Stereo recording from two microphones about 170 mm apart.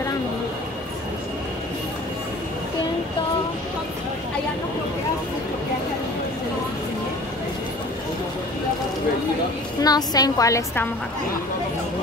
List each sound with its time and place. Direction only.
9.8 s a woman's voice: 20° left (ahead or behind)